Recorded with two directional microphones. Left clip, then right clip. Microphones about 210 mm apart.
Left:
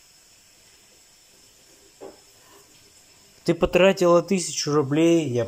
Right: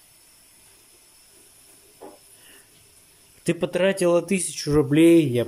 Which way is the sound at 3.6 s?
Centre (ahead or behind).